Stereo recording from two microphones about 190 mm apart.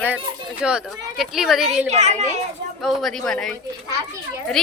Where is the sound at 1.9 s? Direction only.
35° right (ahead or behind).